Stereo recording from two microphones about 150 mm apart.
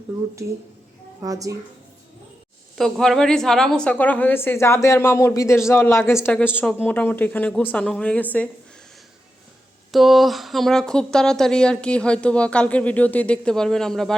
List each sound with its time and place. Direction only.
1.2 s a child's voice: 25° right (ahead or behind)
2.7 s a woman's voice: centre (ahead or behind)
9.9 s speech: centre (ahead or behind)